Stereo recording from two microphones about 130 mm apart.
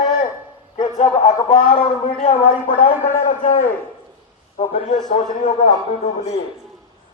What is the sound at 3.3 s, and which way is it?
Speech, 65° left (ahead or behind).